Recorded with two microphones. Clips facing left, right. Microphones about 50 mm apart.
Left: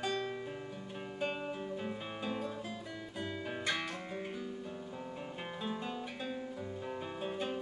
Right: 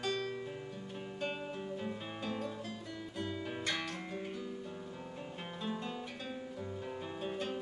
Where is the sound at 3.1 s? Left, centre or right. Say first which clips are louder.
Even; centre.